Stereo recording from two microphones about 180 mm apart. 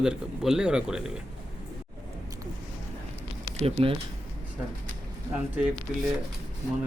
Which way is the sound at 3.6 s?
30° right (ahead or behind).